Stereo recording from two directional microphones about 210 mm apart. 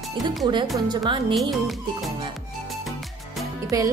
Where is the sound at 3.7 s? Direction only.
15° right (ahead or behind).